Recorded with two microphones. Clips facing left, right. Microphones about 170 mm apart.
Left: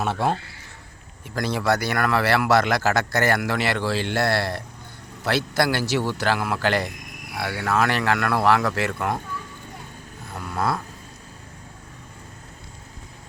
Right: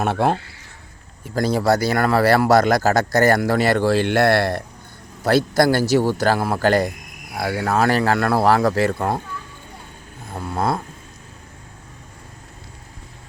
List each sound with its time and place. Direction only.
0.0 s speech: 55° right (ahead or behind)
1.3 s speech: 35° right (ahead or behind); by 4.6 s 55° right (ahead or behind)
5.2 s speech: 40° right (ahead or behind)
10.3 s a sound: 25° right (ahead or behind)